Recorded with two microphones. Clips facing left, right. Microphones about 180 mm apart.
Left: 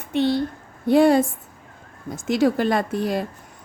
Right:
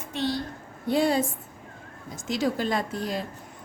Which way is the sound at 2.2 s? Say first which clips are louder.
Left 7 dB; 60° left (ahead or behind).